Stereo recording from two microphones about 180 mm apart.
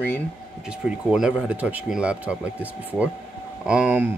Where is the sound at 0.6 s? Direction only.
5° right (ahead or behind).